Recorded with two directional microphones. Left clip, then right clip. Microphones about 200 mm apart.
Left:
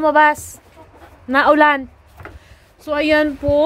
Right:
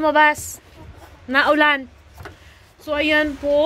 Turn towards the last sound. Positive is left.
turn(degrees=25)  # may be behind; listen again after turning